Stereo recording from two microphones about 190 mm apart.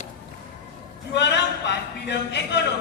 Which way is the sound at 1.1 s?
65° left (ahead or behind).